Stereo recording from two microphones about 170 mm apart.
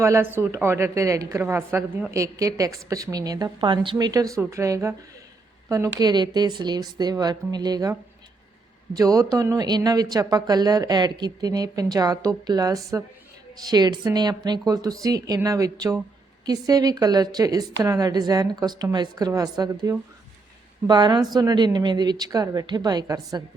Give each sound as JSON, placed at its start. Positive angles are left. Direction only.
{"t": 0.0, "sound": "a woman's voice", "side_deg": -15}